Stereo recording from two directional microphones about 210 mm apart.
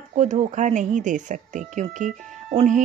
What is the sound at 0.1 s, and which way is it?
Speech, 35° right (ahead or behind).